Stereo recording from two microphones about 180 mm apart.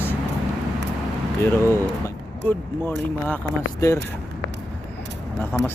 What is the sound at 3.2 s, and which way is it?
Speech, 15° left (ahead or behind).